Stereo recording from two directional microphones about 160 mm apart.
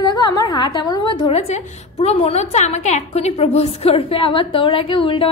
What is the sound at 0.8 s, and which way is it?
A woman's voice, 30° left (ahead or behind).